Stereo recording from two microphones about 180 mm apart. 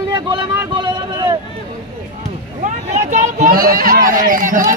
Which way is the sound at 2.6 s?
40° right (ahead or behind).